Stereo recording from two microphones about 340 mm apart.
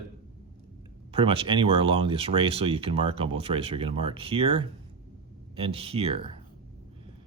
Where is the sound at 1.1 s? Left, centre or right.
Centre.